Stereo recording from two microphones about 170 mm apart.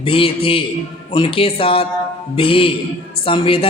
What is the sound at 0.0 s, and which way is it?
A man's voice, 30° left (ahead or behind).